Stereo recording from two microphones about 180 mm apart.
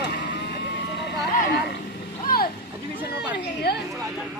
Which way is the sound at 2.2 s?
55° left (ahead or behind).